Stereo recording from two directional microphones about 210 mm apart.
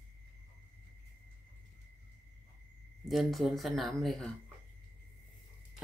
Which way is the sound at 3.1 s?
Centre (ahead or behind).